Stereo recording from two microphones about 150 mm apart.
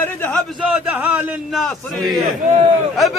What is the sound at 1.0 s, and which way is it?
Speech, 10° right (ahead or behind).